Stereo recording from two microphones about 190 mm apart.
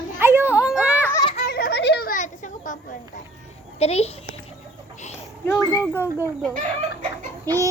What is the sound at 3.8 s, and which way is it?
Speech, 35° left (ahead or behind).